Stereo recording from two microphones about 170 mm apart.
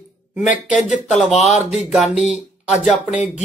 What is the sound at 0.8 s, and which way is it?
Speech, 45° left (ahead or behind).